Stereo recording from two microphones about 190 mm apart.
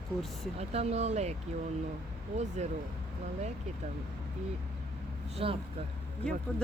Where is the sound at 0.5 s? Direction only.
35° right (ahead or behind).